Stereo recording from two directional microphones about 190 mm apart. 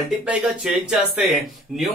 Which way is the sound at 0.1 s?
5° right (ahead or behind).